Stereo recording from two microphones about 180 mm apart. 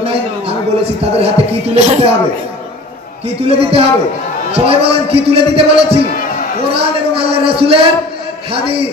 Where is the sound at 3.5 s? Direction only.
35° right (ahead or behind).